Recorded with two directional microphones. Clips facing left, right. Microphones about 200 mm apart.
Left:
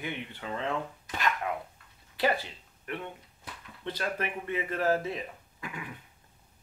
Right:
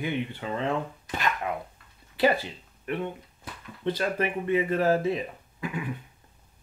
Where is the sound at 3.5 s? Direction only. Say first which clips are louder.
Right 3 dB; 45° right (ahead or behind).